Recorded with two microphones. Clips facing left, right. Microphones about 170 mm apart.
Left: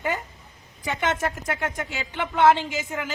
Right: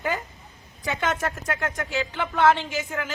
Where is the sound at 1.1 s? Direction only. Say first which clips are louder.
Left 2 dB; 25° left (ahead or behind).